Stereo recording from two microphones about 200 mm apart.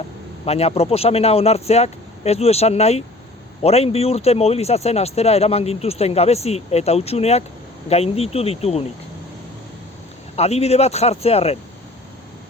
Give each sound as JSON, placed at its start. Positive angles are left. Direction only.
{"t": 0.4, "sound": "speech", "side_deg": 30}
{"t": 10.3, "sound": "speech", "side_deg": 30}